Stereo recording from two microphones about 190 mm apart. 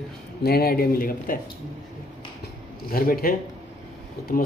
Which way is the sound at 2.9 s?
50° left (ahead or behind).